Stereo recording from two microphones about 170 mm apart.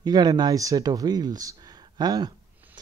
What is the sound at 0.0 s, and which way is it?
Speech, 25° right (ahead or behind).